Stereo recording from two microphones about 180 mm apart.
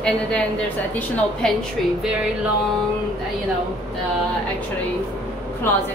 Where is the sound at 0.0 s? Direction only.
5° left (ahead or behind).